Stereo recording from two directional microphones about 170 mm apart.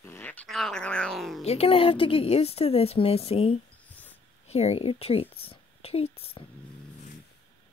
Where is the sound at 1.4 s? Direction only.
35° left (ahead or behind).